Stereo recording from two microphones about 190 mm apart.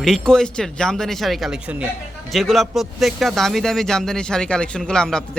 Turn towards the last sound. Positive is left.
turn(degrees=5)  # may be behind; listen again after turning